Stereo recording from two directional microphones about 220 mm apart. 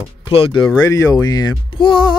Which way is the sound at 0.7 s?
10° left (ahead or behind).